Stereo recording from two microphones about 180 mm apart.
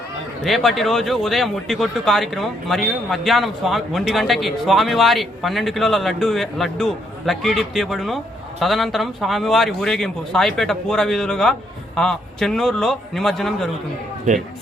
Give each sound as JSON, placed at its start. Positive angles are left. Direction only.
{"t": 0.4, "sound": "speech", "side_deg": 0}